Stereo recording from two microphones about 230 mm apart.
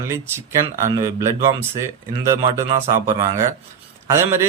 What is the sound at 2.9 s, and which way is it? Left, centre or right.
Speech, centre.